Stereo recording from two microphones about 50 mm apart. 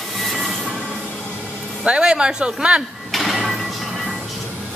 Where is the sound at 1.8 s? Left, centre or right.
Centre.